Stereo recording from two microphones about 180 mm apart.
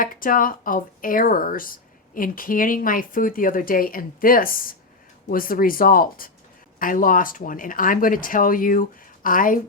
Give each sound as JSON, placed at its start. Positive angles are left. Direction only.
{"t": 0.0, "sound": "speech", "side_deg": 50}